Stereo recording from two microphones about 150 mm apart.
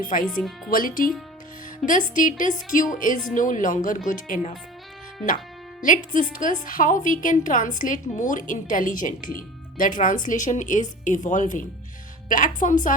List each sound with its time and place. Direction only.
0.0 s a woman's voice: 65° left (ahead or behind)
5.8 s a woman's voice: 60° left (ahead or behind)